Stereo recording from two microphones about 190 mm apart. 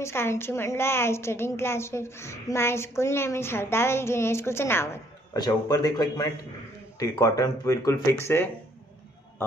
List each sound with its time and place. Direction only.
0.0 s a woman's voice: 15° left (ahead or behind)